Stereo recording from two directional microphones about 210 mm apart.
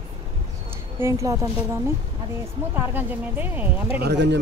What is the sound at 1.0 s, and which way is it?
Speech, 15° right (ahead or behind).